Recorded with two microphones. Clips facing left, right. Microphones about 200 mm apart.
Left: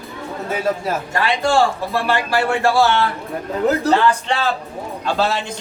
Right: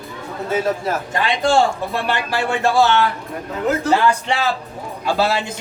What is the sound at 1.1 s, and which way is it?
Speech, 20° right (ahead or behind).